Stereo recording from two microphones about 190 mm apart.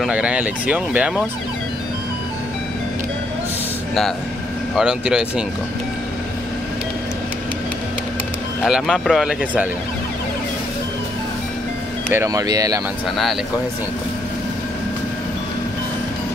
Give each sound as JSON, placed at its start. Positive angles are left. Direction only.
{"t": 0.0, "sound": "speech", "side_deg": -5}
{"t": 4.7, "sound": "speech", "side_deg": -5}
{"t": 8.6, "sound": "speech", "side_deg": -5}
{"t": 12.1, "sound": "speech", "side_deg": -15}